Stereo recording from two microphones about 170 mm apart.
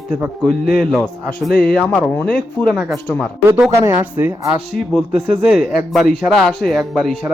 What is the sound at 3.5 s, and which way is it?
Speech, 15° right (ahead or behind).